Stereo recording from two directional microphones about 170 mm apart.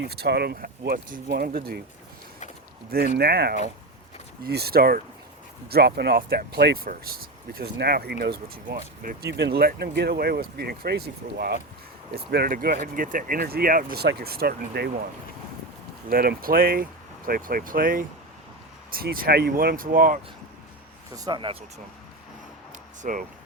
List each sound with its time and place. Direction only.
0.1 s speech: 70° right (ahead or behind)
3.2 s speech: 65° right (ahead or behind)
16.0 s speech: 60° right (ahead or behind)
21.2 s speech: 25° right (ahead or behind)
23.0 s speech: 50° right (ahead or behind)